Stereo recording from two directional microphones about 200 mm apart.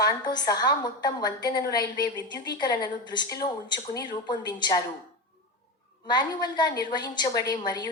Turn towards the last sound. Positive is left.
turn(degrees=20)  # may be behind; listen again after turning